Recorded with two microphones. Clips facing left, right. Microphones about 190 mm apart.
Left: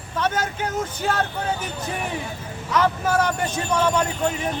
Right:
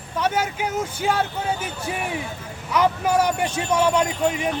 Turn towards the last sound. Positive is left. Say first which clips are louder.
# right 2 dB
turn(degrees=-10)  # may be behind; listen again after turning